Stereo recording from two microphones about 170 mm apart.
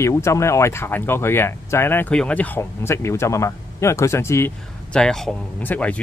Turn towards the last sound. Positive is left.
turn(degrees=10)  # may be behind; listen again after turning